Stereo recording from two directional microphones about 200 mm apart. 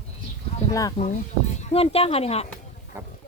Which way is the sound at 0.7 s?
15° left (ahead or behind).